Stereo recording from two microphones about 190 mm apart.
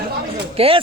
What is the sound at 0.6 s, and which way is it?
Speech, 30° right (ahead or behind).